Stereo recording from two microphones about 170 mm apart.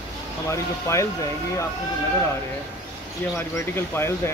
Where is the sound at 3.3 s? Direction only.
15° left (ahead or behind).